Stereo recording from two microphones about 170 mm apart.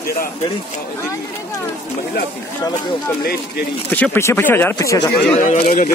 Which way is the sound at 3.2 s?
70° left (ahead or behind).